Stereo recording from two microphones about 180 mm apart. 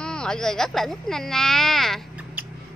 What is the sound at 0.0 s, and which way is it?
Speech, 5° left (ahead or behind).